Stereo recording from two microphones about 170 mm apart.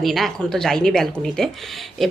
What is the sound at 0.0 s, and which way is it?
Speech, centre (ahead or behind).